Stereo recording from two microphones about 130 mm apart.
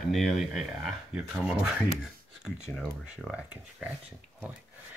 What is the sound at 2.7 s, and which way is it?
Speech, 5° left (ahead or behind).